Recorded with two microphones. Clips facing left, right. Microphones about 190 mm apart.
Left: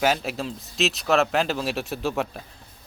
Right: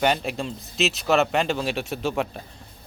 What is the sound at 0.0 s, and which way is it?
Speech, centre (ahead or behind).